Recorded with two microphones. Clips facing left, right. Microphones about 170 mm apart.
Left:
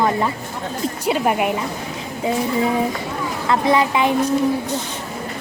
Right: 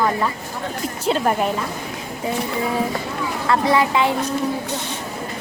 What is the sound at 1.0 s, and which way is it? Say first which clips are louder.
Speech: even; 10° left (ahead or behind).